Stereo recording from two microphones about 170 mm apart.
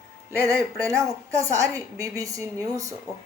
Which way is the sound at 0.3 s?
20° right (ahead or behind).